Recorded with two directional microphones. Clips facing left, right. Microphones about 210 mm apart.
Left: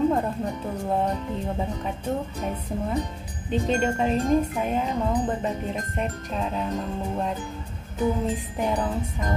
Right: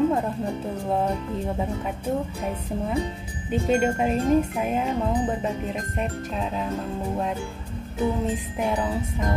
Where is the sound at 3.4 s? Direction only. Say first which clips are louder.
Right 2 dB; 10° right (ahead or behind).